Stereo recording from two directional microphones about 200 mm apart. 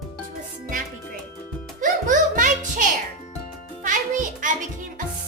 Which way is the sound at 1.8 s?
40° right (ahead or behind).